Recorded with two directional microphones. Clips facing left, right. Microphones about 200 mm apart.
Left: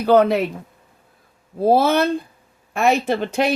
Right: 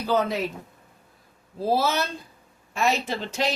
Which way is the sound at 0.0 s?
60° left (ahead or behind).